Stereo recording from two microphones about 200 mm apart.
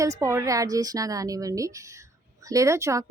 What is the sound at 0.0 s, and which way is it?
A woman's voice, 15° right (ahead or behind).